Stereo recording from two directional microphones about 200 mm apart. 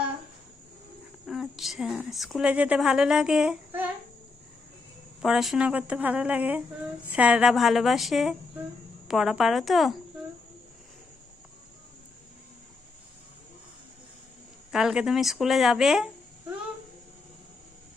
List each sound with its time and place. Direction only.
1.3 s a woman's voice: centre (ahead or behind)
5.2 s a woman's voice: centre (ahead or behind)
14.7 s a woman's voice: centre (ahead or behind)